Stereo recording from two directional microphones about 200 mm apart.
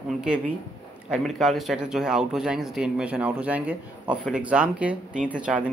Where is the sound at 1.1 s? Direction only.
Centre (ahead or behind).